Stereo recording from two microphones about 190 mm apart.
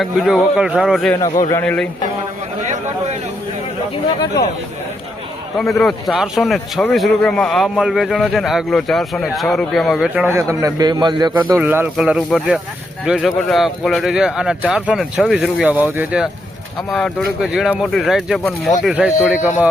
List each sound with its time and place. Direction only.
0.0 s a man's voice: centre (ahead or behind)
1.1 s a man's voice: 15° left (ahead or behind)
1.6 s a man's voice: 5° left (ahead or behind)
5.5 s a man's voice: centre (ahead or behind)
10.3 s a man's voice: 15° right (ahead or behind)
11.5 s a man's voice: 10° right (ahead or behind)